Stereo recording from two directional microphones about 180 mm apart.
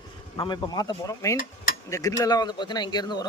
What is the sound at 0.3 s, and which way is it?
Speech, 25° left (ahead or behind).